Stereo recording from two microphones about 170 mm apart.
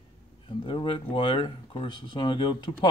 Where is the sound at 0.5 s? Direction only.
30° left (ahead or behind).